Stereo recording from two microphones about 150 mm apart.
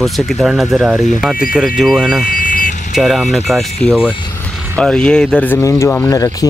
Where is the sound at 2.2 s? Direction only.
65° left (ahead or behind).